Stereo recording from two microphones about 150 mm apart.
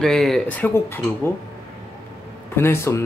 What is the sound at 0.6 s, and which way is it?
Speech, 15° left (ahead or behind).